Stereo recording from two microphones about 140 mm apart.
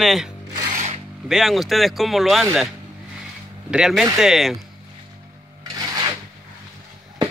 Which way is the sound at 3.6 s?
5° right (ahead or behind).